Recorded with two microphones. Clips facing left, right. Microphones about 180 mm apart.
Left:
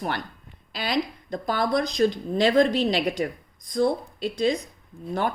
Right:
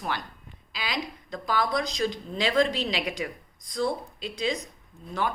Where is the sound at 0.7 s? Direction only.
55° left (ahead or behind).